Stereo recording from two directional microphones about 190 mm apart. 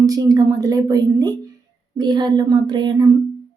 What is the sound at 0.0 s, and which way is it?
Speech, 20° right (ahead or behind).